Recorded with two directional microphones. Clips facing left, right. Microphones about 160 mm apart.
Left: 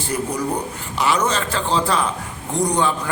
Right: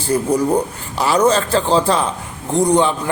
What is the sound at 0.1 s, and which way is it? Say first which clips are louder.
A man's voice: right 8 dB; 30° right (ahead or behind).